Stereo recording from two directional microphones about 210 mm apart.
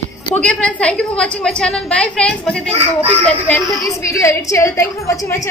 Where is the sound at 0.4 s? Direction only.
5° left (ahead or behind).